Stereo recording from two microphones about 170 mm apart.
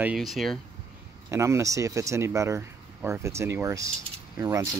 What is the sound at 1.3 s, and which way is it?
Speech, 15° right (ahead or behind).